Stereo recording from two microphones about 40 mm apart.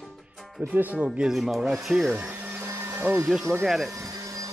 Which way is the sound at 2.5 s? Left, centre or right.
Right.